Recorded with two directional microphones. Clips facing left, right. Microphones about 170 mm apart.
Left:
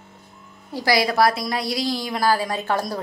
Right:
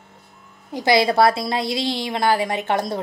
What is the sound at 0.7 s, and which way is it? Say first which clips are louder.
A woman's voice: right 3 dB; 25° right (ahead or behind).